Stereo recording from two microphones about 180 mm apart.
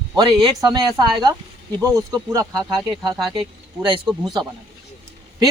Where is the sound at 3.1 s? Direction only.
Centre (ahead or behind).